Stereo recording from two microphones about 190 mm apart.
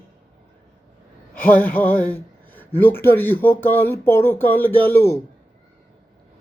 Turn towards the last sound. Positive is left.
turn(degrees=10)  # may be behind; listen again after turning